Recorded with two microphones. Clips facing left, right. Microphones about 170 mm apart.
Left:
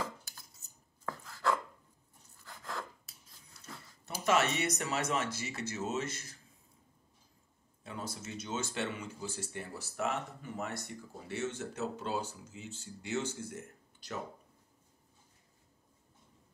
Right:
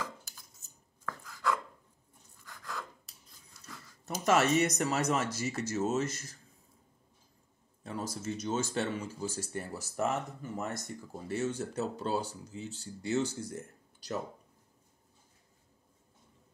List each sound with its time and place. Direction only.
1.0 s chopping: 30° left (ahead or behind)
2.4 s a sound: 25° left (ahead or behind)
4.0 s speech: 40° right (ahead or behind)
7.8 s speech: 45° right (ahead or behind)